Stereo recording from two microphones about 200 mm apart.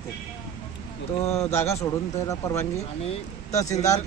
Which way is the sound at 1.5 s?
15° left (ahead or behind).